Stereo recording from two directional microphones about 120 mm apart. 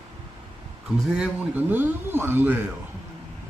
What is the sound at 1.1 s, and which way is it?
A man's voice, 10° right (ahead or behind).